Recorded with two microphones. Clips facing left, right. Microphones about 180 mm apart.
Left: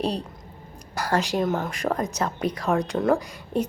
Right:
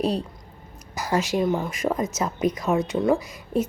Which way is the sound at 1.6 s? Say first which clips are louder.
Right 1 dB; 5° right (ahead or behind).